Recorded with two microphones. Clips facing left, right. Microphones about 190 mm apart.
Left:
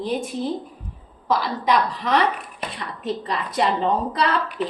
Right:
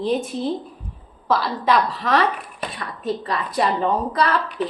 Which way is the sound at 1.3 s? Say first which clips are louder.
Right 1 dB; 15° left (ahead or behind).